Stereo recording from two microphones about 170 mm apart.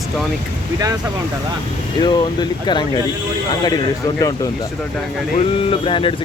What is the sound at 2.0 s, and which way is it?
Speech, 25° left (ahead or behind).